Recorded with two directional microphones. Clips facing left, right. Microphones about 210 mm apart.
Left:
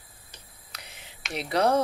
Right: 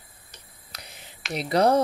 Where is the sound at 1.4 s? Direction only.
35° right (ahead or behind).